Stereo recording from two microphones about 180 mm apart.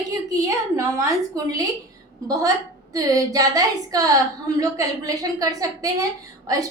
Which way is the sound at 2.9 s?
20° right (ahead or behind).